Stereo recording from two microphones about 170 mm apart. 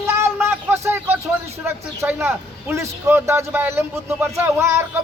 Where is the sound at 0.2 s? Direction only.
15° right (ahead or behind).